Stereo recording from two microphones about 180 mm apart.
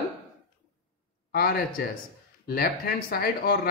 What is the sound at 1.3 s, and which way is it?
Speech, 55° left (ahead or behind).